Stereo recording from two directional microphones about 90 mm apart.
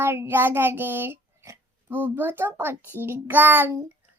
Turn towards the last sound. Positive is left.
turn(degrees=-20)  # may be behind; listen again after turning